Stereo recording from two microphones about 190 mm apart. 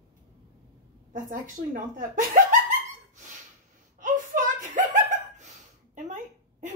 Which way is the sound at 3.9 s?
40° right (ahead or behind).